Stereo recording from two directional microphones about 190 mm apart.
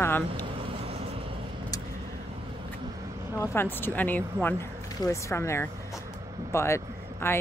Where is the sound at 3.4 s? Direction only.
10° left (ahead or behind).